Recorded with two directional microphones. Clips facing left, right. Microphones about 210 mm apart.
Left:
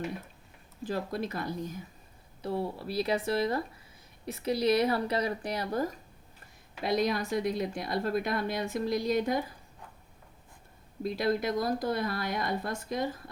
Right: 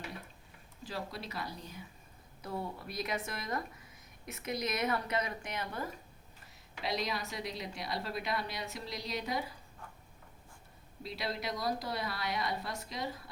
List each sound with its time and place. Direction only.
0.9 s speech: 50° left (ahead or behind)
2.4 s speech: 30° left (ahead or behind)
6.8 s speech: 50° left (ahead or behind)
11.0 s speech: 50° left (ahead or behind)